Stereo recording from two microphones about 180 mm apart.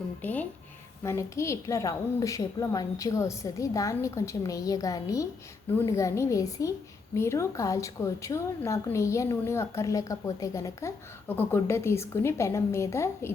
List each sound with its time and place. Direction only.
0.2 s a woman's voice: 10° left (ahead or behind)